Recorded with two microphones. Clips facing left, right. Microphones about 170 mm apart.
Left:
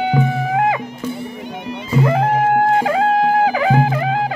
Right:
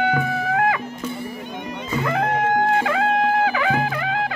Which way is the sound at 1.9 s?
30° left (ahead or behind).